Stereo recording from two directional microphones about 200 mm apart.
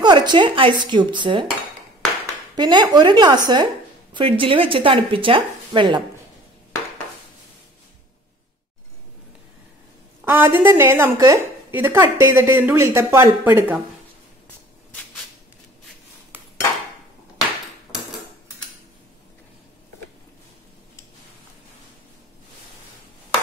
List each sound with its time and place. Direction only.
0.0 s speech: 20° right (ahead or behind)
2.5 s speech: 20° right (ahead or behind)
10.2 s a woman's voice: 10° right (ahead or behind)